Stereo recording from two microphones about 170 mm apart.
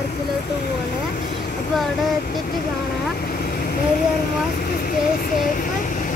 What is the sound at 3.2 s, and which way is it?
Vehicle, 60° left (ahead or behind).